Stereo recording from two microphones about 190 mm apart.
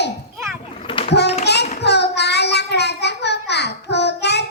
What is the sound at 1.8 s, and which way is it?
Child singing, 60° left (ahead or behind).